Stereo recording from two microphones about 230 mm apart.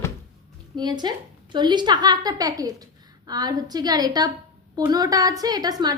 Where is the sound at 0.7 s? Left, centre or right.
Centre.